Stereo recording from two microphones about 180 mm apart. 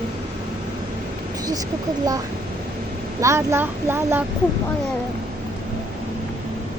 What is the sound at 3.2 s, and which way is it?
Speech, 15° right (ahead or behind).